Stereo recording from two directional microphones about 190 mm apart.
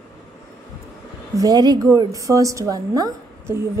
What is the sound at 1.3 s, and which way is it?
A woman's voice, 20° right (ahead or behind).